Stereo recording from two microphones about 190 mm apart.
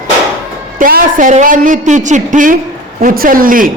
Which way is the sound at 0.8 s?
45° right (ahead or behind).